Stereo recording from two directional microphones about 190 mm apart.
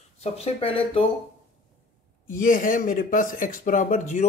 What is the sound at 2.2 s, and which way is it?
Speech, 45° left (ahead or behind).